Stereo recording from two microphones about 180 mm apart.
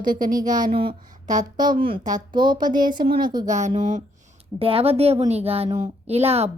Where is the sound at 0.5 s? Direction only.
25° right (ahead or behind).